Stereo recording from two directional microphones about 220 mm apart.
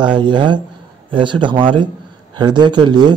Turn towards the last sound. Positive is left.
turn(degrees=-20)  # may be behind; listen again after turning